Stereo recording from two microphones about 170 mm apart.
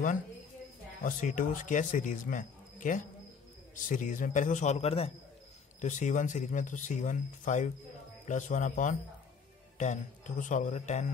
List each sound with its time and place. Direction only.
1.0 s speech: 50° left (ahead or behind)